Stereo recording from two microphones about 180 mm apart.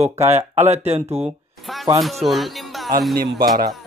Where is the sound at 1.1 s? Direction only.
Centre (ahead or behind).